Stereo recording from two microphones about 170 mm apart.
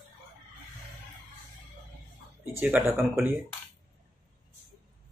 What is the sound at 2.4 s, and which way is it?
Speech, 10° right (ahead or behind).